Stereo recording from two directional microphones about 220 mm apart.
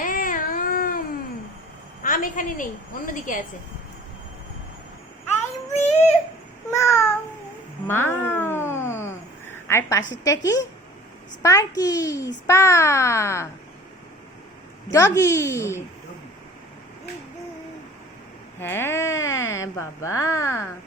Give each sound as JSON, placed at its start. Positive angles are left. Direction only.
{"t": 0.0, "sound": "cat", "side_deg": 40}
{"t": 2.0, "sound": "a woman's voice", "side_deg": 40}
{"t": 5.7, "sound": "a sound", "side_deg": 30}
{"t": 6.7, "sound": "babbling", "side_deg": 10}
{"t": 7.9, "sound": "a sound", "side_deg": 10}
{"t": 10.4, "sound": "a child's voice", "side_deg": 15}
{"t": 14.8, "sound": "a child's voice", "side_deg": 15}
{"t": 18.6, "sound": "speech", "side_deg": 10}